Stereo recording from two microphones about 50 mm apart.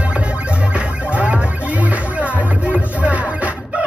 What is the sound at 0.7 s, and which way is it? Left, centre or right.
Music, right.